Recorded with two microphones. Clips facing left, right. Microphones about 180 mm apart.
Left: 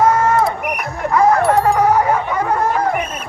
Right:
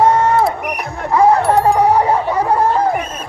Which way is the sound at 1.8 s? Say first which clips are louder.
Right 1 dB; 35° right (ahead or behind).